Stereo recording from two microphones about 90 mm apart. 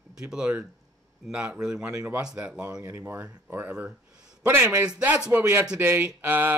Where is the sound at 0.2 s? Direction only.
10° right (ahead or behind).